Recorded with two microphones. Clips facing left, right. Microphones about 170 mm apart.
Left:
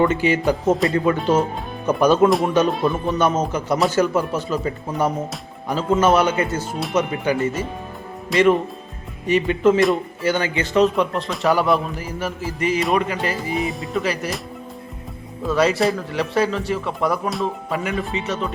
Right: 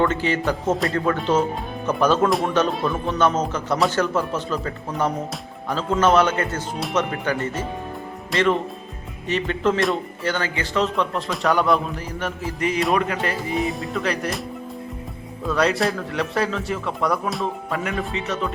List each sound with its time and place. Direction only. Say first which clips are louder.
0.0 s speech: left 3 dB; 10° left (ahead or behind)
0.7 s speech: left 3 dB; centre (ahead or behind)
9.2 s speech: left 5 dB; 10° left (ahead or behind)
9.8 s speech: left 4 dB; centre (ahead or behind)
10.3 s speech: left 5 dB; 20° left (ahead or behind)
10.9 s speech: left 2 dB; 5° left (ahead or behind)
15.4 s speech: left 3 dB; centre (ahead or behind)